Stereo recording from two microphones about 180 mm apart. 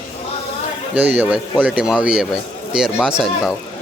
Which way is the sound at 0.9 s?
10° right (ahead or behind).